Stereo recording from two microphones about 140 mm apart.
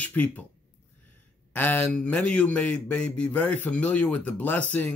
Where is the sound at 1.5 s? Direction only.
15° left (ahead or behind).